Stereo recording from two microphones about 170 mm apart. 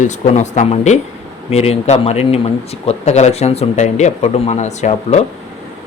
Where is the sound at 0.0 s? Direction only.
45° left (ahead or behind).